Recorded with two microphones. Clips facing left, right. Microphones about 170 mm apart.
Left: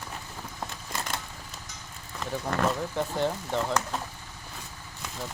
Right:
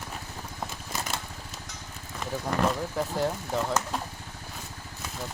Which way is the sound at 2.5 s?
Centre (ahead or behind).